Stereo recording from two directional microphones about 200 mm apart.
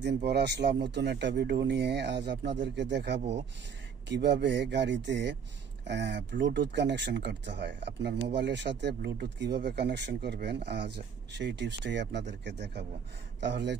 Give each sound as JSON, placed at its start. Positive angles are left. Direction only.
{"t": 0.0, "sound": "speech", "side_deg": -55}